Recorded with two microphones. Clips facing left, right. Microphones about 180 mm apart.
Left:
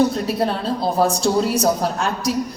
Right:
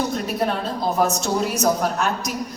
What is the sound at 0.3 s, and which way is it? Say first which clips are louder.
A woman's voice: left 2 dB; 30° left (ahead or behind).